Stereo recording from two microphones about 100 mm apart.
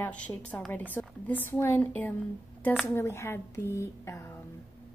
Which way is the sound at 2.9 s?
25° left (ahead or behind).